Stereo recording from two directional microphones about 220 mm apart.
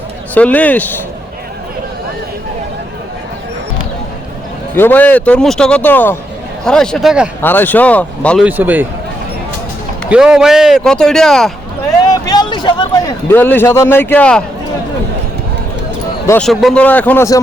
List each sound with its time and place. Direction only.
0.3 s speech: 5° left (ahead or behind)
4.7 s speech: 10° left (ahead or behind)
7.4 s speech: 10° left (ahead or behind)
8.4 s a man's voice: 10° right (ahead or behind)
10.1 s speech: 5° right (ahead or behind)
12.2 s a sound: 20° left (ahead or behind)
13.2 s speech: 10° left (ahead or behind)
16.2 s speech: 5° left (ahead or behind)